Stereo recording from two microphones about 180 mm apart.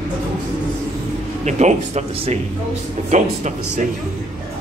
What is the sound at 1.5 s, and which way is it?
Speech, 40° right (ahead or behind).